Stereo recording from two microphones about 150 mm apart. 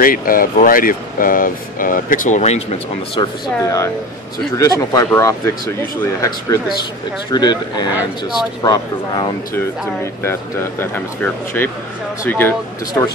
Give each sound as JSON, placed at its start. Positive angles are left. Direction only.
{"t": 0.0, "sound": "speech", "side_deg": 70}
{"t": 3.2, "sound": "speech", "side_deg": 20}
{"t": 10.2, "sound": "speech", "side_deg": 15}